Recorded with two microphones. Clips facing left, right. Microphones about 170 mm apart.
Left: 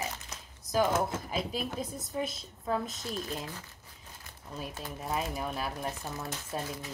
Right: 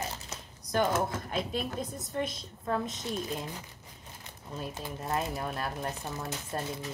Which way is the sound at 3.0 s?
25° right (ahead or behind).